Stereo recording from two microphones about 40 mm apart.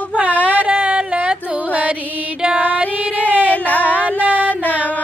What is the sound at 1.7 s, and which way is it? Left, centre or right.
Music, right.